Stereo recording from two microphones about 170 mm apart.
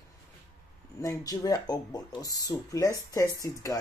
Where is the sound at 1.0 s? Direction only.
20° left (ahead or behind).